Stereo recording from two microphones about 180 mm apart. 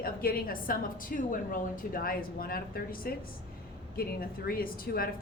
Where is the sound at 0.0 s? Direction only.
55° left (ahead or behind).